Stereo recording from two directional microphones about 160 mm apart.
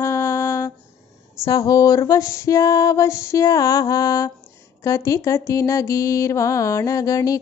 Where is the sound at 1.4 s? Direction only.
20° left (ahead or behind).